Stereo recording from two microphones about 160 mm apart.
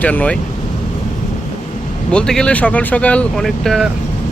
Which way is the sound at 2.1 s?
5° left (ahead or behind).